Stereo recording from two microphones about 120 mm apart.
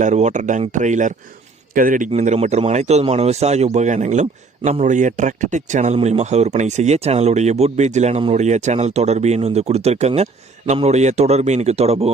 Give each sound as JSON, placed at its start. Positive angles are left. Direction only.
{"t": 0.0, "sound": "speech", "side_deg": -80}
{"t": 2.0, "sound": "a man's voice", "side_deg": -75}